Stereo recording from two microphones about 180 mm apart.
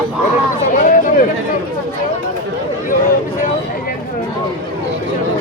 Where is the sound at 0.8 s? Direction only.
50° left (ahead or behind).